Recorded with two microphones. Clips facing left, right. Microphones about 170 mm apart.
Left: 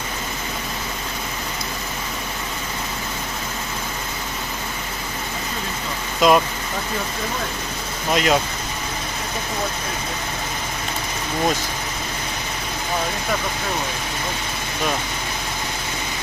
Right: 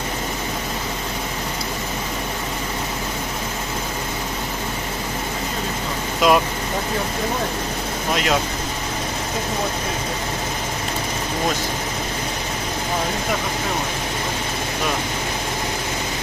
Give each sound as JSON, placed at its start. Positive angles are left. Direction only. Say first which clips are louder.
{"t": 6.2, "sound": "speech", "louder": "left 1 dB", "side_deg": -5}
{"t": 8.1, "sound": "speech", "louder": "left 3 dB", "side_deg": 0}